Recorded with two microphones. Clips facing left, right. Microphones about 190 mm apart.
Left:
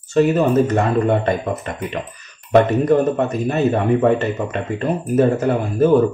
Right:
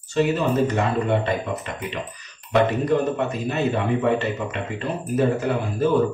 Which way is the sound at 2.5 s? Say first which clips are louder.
Left 6 dB; 45° left (ahead or behind).